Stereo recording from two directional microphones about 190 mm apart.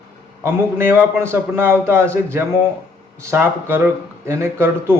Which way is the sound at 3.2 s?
15° right (ahead or behind).